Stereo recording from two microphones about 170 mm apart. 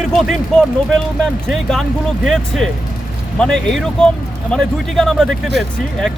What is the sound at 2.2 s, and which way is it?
Speech, centre (ahead or behind).